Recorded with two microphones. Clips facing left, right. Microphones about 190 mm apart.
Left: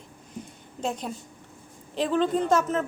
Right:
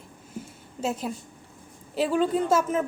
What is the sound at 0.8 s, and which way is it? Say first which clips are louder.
A woman's voice: right 2 dB; 5° right (ahead or behind).